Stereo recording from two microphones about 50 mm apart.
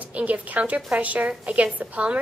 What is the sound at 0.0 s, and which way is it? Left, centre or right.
A woman's voice, right.